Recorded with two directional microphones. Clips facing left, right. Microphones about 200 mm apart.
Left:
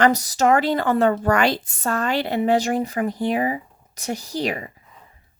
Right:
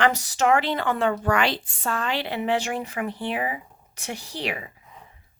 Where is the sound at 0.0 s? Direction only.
40° left (ahead or behind).